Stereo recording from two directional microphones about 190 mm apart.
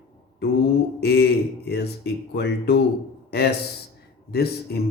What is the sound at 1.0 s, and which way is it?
Mantra, 60° left (ahead or behind).